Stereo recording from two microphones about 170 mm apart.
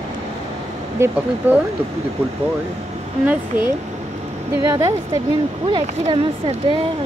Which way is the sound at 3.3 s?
10° right (ahead or behind).